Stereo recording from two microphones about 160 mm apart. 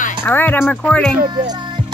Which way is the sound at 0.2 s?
10° left (ahead or behind).